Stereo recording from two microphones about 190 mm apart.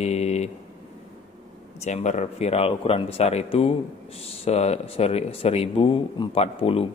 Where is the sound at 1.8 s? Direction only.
35° left (ahead or behind).